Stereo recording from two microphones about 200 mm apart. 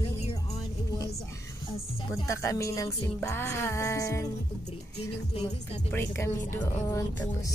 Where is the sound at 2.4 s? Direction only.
15° left (ahead or behind).